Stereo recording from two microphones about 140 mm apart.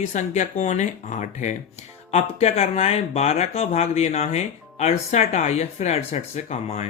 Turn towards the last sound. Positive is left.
turn(degrees=55)  # may be behind; listen again after turning